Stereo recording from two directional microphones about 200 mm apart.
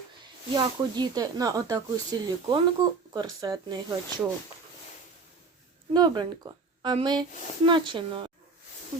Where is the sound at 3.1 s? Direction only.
20° right (ahead or behind).